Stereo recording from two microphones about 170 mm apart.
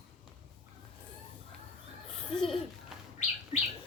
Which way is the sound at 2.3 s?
5° left (ahead or behind).